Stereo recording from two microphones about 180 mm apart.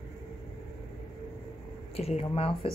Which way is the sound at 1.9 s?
35° left (ahead or behind).